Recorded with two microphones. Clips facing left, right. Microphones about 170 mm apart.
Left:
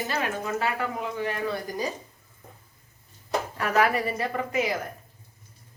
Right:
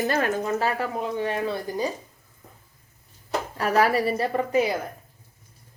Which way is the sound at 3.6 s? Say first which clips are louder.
Right 3 dB; 35° right (ahead or behind).